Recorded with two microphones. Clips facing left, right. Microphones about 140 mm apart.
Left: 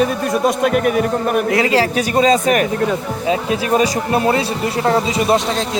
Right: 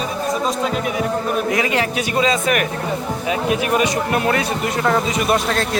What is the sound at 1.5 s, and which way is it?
Speech, 30° left (ahead or behind).